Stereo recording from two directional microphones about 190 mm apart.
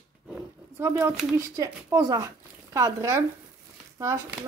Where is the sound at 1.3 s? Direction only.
15° right (ahead or behind).